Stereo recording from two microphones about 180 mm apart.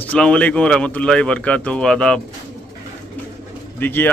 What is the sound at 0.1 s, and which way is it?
A man's voice, 5° left (ahead or behind).